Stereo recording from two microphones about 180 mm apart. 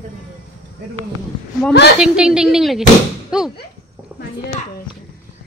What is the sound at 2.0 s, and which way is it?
Speech, 5° right (ahead or behind).